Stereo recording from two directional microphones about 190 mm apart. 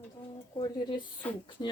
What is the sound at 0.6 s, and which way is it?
Speech, 20° left (ahead or behind).